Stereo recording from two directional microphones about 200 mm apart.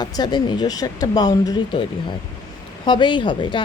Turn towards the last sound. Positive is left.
turn(degrees=25)  # may be behind; listen again after turning